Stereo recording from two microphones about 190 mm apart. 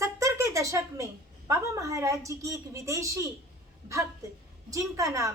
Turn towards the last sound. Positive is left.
turn(degrees=-15)  # may be behind; listen again after turning